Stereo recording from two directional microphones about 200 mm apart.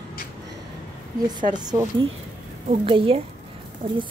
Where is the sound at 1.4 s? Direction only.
20° right (ahead or behind).